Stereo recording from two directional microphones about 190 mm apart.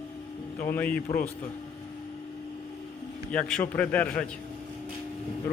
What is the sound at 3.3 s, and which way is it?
Speech, 5° left (ahead or behind).